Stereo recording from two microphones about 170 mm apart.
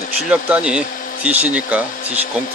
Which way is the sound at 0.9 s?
55° left (ahead or behind).